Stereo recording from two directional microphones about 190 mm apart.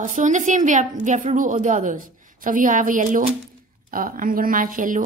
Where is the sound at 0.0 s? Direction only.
40° right (ahead or behind).